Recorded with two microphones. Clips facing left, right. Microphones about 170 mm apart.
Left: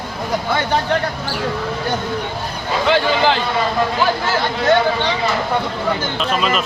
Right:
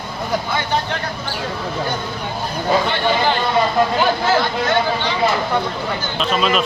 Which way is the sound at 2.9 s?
90° left.